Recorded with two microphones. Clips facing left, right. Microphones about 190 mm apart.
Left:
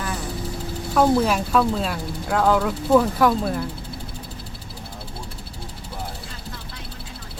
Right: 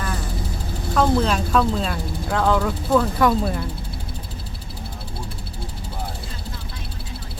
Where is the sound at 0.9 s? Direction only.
10° left (ahead or behind).